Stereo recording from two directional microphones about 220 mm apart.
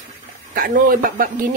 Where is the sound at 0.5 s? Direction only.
40° right (ahead or behind).